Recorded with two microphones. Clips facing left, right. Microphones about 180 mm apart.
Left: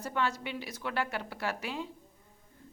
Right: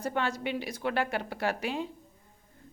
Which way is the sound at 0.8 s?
60° right (ahead or behind).